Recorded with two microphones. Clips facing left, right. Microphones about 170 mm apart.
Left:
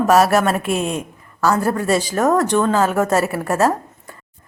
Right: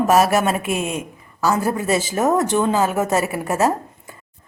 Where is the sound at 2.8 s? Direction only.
Centre (ahead or behind).